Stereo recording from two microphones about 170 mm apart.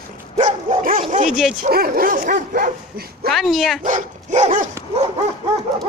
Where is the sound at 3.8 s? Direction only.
45° right (ahead or behind).